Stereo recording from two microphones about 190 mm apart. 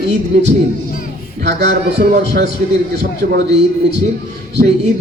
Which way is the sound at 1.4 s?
60° right (ahead or behind).